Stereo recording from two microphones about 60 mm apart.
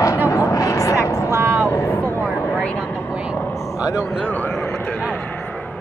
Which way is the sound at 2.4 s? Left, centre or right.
Left.